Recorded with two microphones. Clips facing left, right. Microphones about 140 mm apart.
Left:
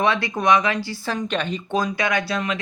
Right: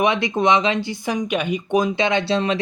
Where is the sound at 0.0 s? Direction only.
20° right (ahead or behind).